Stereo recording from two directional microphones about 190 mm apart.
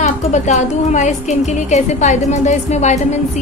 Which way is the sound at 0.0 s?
40° left (ahead or behind).